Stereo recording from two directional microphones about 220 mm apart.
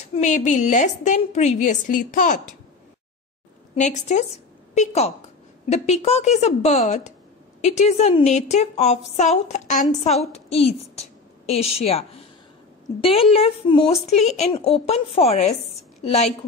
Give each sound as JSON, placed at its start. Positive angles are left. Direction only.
{"t": 0.1, "sound": "a woman's voice", "side_deg": 30}
{"t": 3.7, "sound": "a woman's voice", "side_deg": 30}
{"t": 13.0, "sound": "a woman's voice", "side_deg": 25}